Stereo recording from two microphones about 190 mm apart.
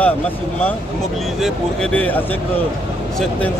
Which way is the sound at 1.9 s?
10° left (ahead or behind).